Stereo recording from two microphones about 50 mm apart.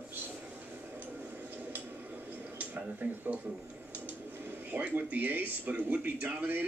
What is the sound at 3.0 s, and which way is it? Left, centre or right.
Speech, right.